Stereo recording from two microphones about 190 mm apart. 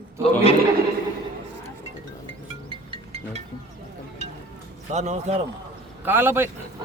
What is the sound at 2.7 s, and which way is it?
Music, 30° right (ahead or behind).